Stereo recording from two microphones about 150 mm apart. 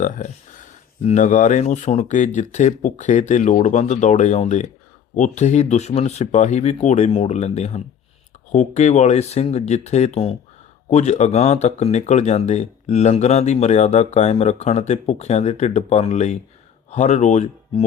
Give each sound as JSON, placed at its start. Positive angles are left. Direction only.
{"t": 1.0, "sound": "speech", "side_deg": 55}